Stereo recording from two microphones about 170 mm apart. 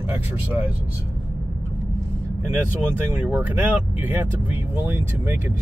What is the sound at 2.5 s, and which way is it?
Speech, 10° right (ahead or behind).